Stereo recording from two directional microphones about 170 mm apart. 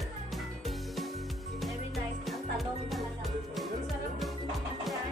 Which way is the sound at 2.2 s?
Centre (ahead or behind).